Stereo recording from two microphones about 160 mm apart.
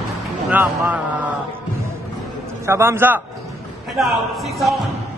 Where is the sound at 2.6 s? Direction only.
15° right (ahead or behind).